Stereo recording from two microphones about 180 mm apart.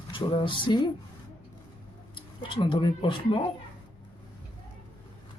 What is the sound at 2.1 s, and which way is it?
Speech, 25° left (ahead or behind).